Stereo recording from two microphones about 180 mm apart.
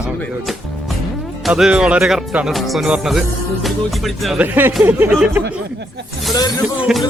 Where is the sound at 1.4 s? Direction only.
5° right (ahead or behind).